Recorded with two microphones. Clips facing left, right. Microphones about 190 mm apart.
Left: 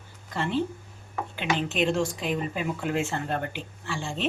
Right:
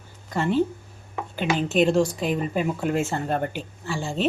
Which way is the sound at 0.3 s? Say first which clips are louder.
Right 5 dB; 45° right (ahead or behind).